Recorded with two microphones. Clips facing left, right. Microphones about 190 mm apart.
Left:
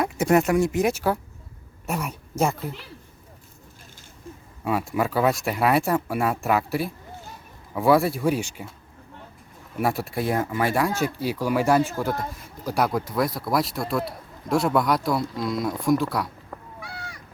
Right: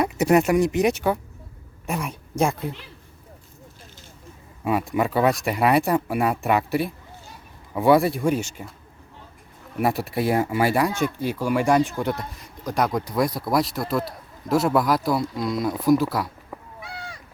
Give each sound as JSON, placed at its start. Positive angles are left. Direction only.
{"t": 0.0, "sound": "speech", "side_deg": 0}
{"t": 2.4, "sound": "speech", "side_deg": 5}
{"t": 4.6, "sound": "speech", "side_deg": 0}
{"t": 9.8, "sound": "speech", "side_deg": 0}
{"t": 11.3, "sound": "speech", "side_deg": 10}
{"t": 16.8, "sound": "cat", "side_deg": -25}